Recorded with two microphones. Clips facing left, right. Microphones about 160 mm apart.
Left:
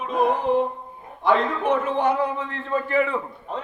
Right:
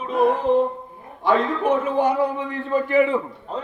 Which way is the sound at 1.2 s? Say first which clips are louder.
Right 1 dB; 5° right (ahead or behind).